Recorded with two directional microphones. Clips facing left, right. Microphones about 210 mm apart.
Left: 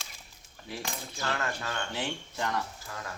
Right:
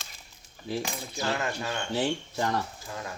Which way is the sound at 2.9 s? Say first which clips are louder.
Right 3 dB; 20° right (ahead or behind).